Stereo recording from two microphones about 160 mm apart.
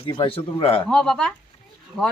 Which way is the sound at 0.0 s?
30° left (ahead or behind).